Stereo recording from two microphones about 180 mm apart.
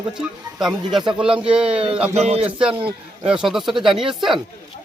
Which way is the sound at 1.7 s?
30° right (ahead or behind).